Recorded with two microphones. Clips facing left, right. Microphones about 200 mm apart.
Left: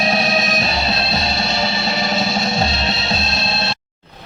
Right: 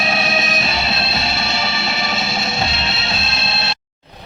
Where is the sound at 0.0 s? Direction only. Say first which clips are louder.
Left 3 dB; 40° left (ahead or behind).